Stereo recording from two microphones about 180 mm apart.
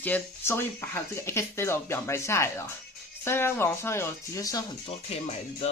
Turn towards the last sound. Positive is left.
turn(degrees=35)  # may be behind; listen again after turning